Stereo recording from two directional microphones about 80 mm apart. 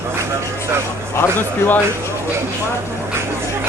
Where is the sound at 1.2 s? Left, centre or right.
Left.